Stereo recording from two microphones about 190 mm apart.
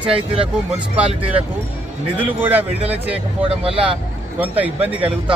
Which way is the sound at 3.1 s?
30° right (ahead or behind).